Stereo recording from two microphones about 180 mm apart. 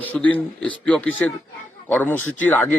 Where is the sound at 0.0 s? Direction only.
10° left (ahead or behind).